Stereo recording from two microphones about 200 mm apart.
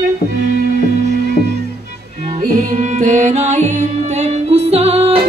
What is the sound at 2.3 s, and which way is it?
Music, 40° right (ahead or behind).